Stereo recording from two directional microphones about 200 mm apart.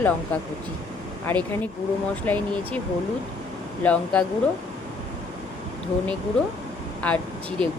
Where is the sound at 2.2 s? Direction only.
10° left (ahead or behind).